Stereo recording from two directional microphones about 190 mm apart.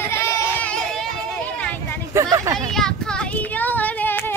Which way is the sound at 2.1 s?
15° right (ahead or behind).